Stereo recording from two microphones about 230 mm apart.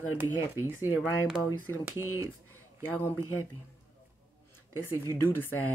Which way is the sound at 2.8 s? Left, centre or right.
Centre.